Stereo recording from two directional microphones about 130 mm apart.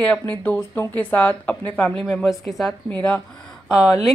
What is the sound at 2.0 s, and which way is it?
Speech, centre (ahead or behind).